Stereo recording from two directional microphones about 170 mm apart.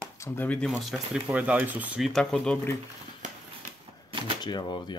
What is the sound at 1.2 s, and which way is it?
Speech, 10° right (ahead or behind).